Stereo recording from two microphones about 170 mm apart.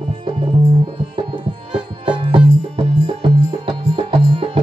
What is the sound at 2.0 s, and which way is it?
Music, 30° right (ahead or behind).